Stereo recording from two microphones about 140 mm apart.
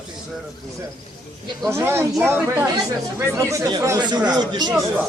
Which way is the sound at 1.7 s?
15° right (ahead or behind).